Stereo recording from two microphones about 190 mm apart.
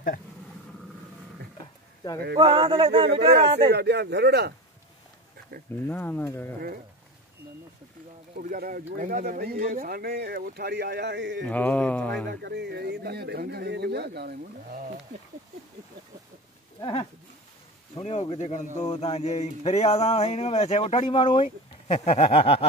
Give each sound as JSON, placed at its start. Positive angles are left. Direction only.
{"t": 2.3, "sound": "speech", "side_deg": -30}
{"t": 3.7, "sound": "speech", "side_deg": -60}
{"t": 5.9, "sound": "speech", "side_deg": 10}
{"t": 8.4, "sound": "speech", "side_deg": -50}
{"t": 11.4, "sound": "speech", "side_deg": 10}
{"t": 12.3, "sound": "speech", "side_deg": -65}
{"t": 18.0, "sound": "a sound", "side_deg": 35}
{"t": 21.0, "sound": "a sound", "side_deg": 25}